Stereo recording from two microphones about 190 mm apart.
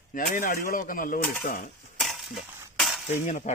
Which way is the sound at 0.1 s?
45° left (ahead or behind).